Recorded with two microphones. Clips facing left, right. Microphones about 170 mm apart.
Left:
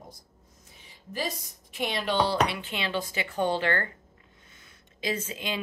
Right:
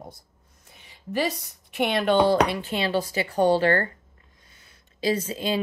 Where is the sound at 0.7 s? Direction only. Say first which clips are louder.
Right 8 dB; 70° right (ahead or behind).